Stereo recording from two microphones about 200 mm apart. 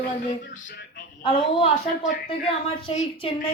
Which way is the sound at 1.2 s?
25° left (ahead or behind).